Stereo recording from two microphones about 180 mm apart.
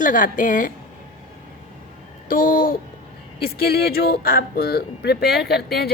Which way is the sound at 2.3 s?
50° left (ahead or behind).